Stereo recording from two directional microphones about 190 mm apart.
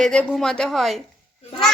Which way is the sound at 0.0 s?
5° left (ahead or behind).